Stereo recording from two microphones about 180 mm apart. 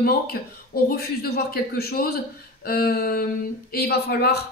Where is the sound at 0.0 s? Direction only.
60° left (ahead or behind).